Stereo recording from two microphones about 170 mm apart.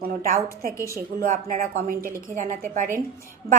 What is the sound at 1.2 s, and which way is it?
A woman's voice, 55° right (ahead or behind).